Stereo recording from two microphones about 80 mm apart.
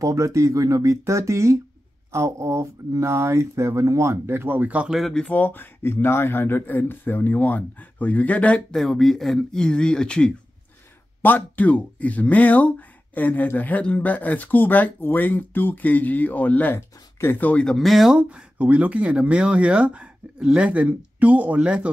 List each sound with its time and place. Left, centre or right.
0.0 s speech: right
4.8 s speech: centre
5.1 s speech: centre
8.7 s speech: centre
11.2 s speech: left
16.7 s speech: left
17.5 s speech: centre
17.7 s speech: centre
18.6 s speech: centre